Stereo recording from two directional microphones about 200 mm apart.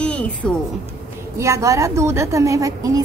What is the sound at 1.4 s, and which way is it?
A woman's voice, 15° right (ahead or behind).